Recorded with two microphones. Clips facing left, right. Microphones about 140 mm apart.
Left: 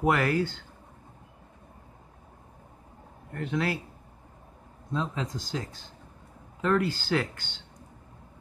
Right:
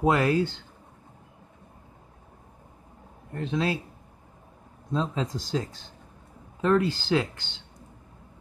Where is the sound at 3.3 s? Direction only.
25° right (ahead or behind).